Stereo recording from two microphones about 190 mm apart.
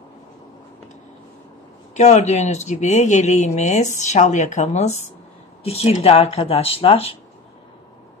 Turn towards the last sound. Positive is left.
turn(degrees=30)  # may be behind; listen again after turning